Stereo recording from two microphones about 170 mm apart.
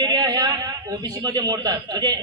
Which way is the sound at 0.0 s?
25° right (ahead or behind).